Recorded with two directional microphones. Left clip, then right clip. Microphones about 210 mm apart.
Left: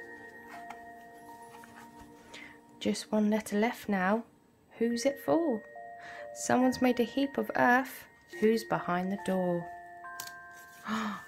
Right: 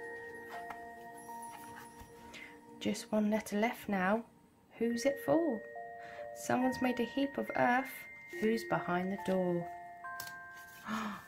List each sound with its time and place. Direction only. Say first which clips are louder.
2.3 s a woman's voice: left 3 dB; 15° left (ahead or behind)
10.8 s music: left 5 dB; 15° left (ahead or behind)